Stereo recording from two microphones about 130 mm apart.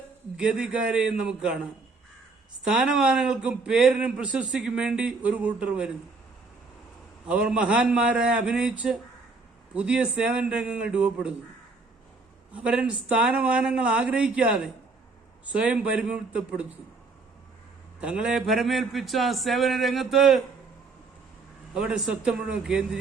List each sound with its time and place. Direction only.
0.3 s speech: 5° right (ahead or behind)
2.6 s speech: 5° right (ahead or behind)
7.3 s speech: 5° right (ahead or behind)
9.7 s speech: 10° right (ahead or behind)
12.5 s speech: 10° right (ahead or behind)
18.0 s speech: 5° right (ahead or behind)
21.7 s speech: 5° right (ahead or behind)